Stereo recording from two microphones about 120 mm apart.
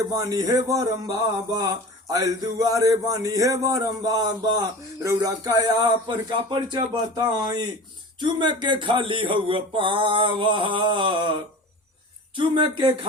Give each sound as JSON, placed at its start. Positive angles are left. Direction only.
{"t": 0.0, "sound": "a man's voice", "side_deg": -30}
{"t": 12.4, "sound": "speech", "side_deg": -40}